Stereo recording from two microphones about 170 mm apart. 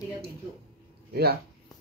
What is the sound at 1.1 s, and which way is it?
Speech, 70° right (ahead or behind).